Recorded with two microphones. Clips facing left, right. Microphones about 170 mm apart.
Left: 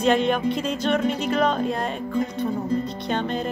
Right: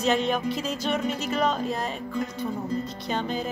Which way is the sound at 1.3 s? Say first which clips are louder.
Left 2 dB; 50° left (ahead or behind).